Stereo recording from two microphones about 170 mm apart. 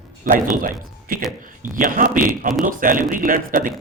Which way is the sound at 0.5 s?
55° right (ahead or behind).